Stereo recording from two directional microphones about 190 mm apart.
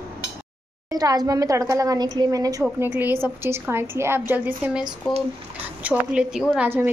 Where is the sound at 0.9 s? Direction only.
20° right (ahead or behind).